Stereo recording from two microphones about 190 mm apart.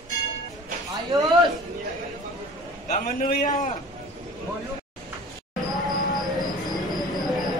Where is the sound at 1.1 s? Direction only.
20° right (ahead or behind).